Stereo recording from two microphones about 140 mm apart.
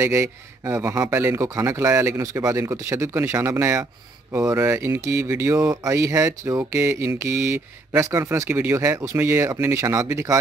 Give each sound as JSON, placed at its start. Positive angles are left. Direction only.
{"t": 0.0, "sound": "a man's voice", "side_deg": -20}